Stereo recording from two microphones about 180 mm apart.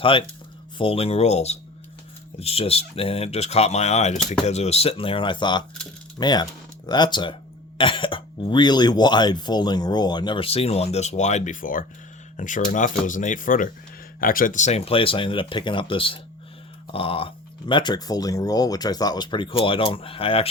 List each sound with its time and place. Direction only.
0.0 s speech: 30° left (ahead or behind)